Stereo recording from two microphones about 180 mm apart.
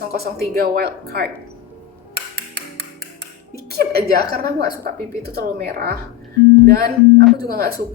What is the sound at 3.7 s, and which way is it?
A woman's voice, 60° right (ahead or behind).